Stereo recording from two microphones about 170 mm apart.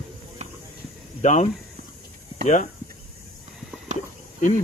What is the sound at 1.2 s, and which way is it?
Speech, 45° left (ahead or behind).